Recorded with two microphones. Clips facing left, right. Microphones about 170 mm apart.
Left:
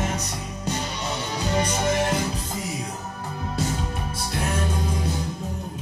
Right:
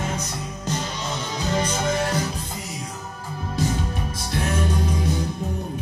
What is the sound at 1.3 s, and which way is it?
Music, 15° left (ahead or behind).